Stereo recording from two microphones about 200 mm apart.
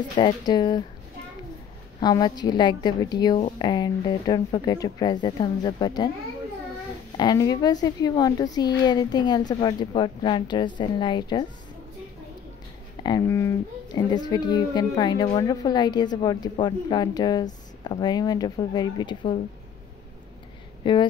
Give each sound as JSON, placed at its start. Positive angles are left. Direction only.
{"t": 0.1, "sound": "speech", "side_deg": 20}
{"t": 2.0, "sound": "speech", "side_deg": 20}
{"t": 7.2, "sound": "speech", "side_deg": 20}
{"t": 13.0, "sound": "speech", "side_deg": 15}
{"t": 20.8, "sound": "speech", "side_deg": 25}